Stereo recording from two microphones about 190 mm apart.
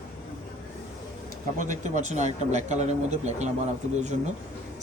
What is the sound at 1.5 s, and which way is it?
Speech, 40° right (ahead or behind).